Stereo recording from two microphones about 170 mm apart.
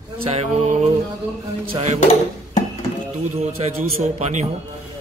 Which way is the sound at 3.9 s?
40° right (ahead or behind).